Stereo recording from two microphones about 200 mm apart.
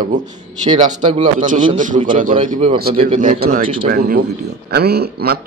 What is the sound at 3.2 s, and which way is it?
A man's voice, 40° right (ahead or behind).